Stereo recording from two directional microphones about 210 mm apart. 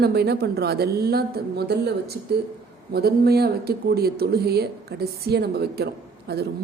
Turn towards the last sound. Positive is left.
turn(degrees=-50)  # may be behind; listen again after turning